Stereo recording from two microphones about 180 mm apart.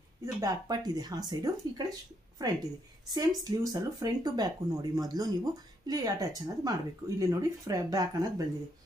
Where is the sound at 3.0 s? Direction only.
20° right (ahead or behind).